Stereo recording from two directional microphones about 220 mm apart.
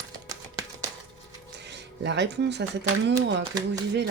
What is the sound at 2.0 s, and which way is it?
Speech, 50° right (ahead or behind).